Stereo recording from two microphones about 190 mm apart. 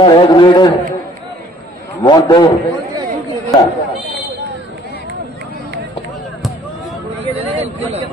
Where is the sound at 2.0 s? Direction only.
20° left (ahead or behind).